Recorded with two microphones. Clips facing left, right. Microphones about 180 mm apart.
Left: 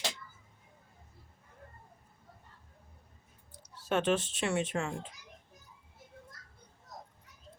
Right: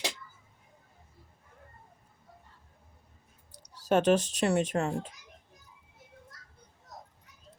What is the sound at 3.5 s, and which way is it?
Speech, 40° right (ahead or behind).